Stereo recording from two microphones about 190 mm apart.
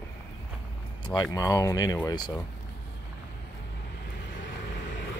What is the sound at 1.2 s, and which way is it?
Speech, 20° left (ahead or behind).